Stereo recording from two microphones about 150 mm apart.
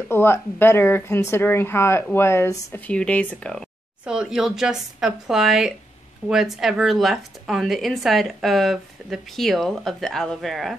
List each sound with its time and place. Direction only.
0.1 s speech: 15° left (ahead or behind)
2.9 s speech: 10° left (ahead or behind)
4.0 s speech: 5° right (ahead or behind)